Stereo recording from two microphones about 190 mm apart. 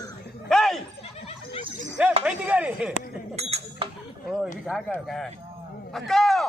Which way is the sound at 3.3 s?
35° right (ahead or behind).